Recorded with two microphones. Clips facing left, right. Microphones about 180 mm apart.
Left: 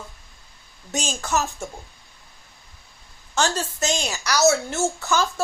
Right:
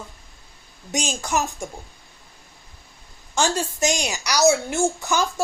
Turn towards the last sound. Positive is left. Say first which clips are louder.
# even
turn(degrees=-15)  # may be behind; listen again after turning